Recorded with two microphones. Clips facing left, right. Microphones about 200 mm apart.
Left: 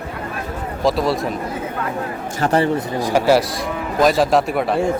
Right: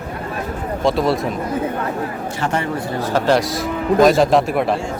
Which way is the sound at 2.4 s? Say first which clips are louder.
Left 5 dB; 35° left (ahead or behind).